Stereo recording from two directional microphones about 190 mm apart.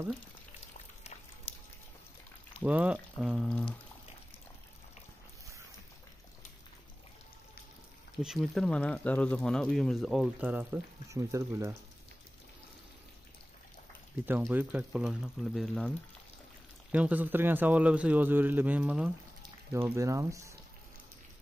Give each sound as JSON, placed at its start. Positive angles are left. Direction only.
{"t": 2.6, "sound": "speech", "side_deg": -5}
{"t": 8.2, "sound": "speech", "side_deg": 0}
{"t": 14.4, "sound": "speech", "side_deg": -10}
{"t": 16.9, "sound": "a man's voice", "side_deg": -10}